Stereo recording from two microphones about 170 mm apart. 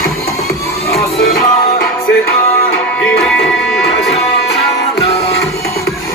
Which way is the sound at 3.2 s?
5° left (ahead or behind).